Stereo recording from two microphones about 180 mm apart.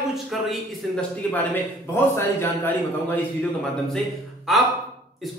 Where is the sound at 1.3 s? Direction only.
10° left (ahead or behind).